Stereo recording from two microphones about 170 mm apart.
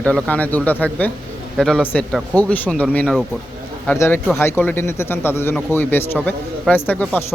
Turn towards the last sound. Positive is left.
turn(degrees=10)  # may be behind; listen again after turning